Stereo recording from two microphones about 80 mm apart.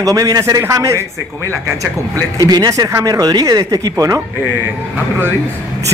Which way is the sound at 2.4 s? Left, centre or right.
Right.